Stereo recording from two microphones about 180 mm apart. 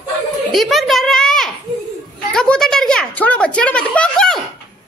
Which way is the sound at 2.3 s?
5° left (ahead or behind).